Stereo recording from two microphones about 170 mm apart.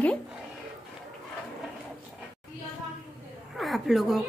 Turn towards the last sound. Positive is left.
turn(degrees=0)  # may be behind; listen again after turning